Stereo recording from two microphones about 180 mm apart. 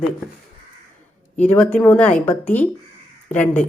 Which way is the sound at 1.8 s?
10° left (ahead or behind).